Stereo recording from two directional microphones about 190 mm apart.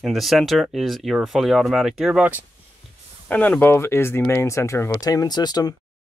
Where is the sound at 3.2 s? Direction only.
10° left (ahead or behind).